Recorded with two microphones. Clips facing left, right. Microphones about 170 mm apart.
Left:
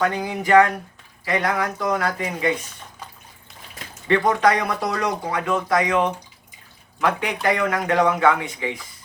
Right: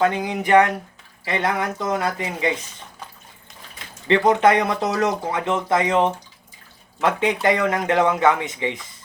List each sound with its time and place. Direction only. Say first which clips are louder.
0.0 s speech: right 2 dB; 20° right (ahead or behind)
4.1 s speech: right 2 dB; 20° right (ahead or behind)